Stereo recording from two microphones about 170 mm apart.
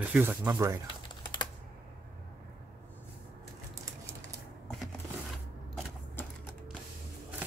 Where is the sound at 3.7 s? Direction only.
20° right (ahead or behind).